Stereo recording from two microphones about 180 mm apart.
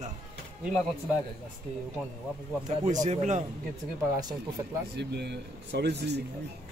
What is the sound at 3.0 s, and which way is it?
Speech, 40° right (ahead or behind).